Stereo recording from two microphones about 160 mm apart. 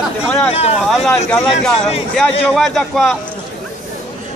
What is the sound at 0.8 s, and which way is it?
A man's voice, centre (ahead or behind).